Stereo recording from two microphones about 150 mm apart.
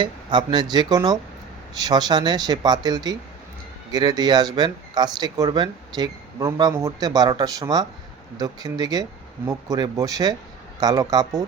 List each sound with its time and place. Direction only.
0.0 s speech: 30° right (ahead or behind)